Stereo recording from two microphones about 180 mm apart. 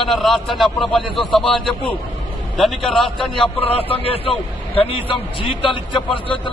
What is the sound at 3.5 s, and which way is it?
A man's voice, 30° left (ahead or behind).